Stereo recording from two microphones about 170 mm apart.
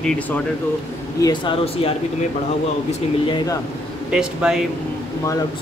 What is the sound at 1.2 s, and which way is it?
Speech, 25° left (ahead or behind).